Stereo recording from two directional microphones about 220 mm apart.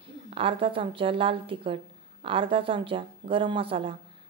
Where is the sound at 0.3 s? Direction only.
25° right (ahead or behind).